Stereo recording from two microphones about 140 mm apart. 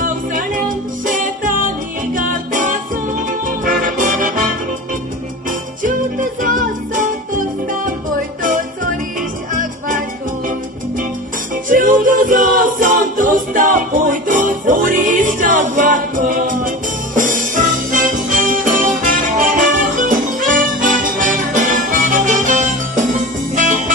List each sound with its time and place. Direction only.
0.0 s music: 75° right (ahead or behind)
3.2 s music: 80° right
5.5 s music: 75° right (ahead or behind)
11.7 s music: 70° right (ahead or behind)